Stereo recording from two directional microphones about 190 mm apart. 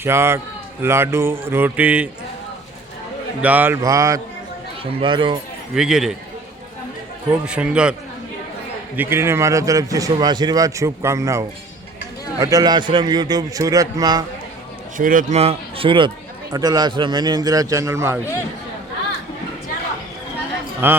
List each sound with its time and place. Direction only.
0.0 s a man's voice: 15° right (ahead or behind)
3.4 s a man's voice: 10° right (ahead or behind)
4.8 s speech: 25° right (ahead or behind)
5.7 s a man's voice: centre (ahead or behind)
7.3 s a man's voice: 5° right (ahead or behind)
9.0 s a man's voice: 10° right (ahead or behind)
14.9 s speech: 45° right (ahead or behind); by 18.2 s 15° right (ahead or behind)
20.8 s a man's voice: 10° right (ahead or behind)